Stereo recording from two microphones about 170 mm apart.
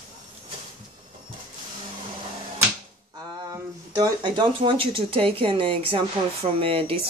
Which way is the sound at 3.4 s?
20° right (ahead or behind).